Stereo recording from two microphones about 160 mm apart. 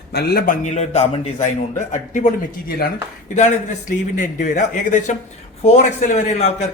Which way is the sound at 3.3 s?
50° left (ahead or behind).